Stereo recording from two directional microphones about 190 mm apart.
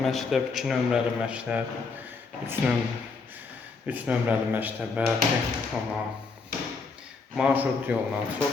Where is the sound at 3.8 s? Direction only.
10° right (ahead or behind).